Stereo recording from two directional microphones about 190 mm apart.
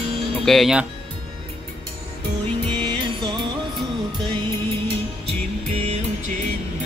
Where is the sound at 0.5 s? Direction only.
Centre (ahead or behind).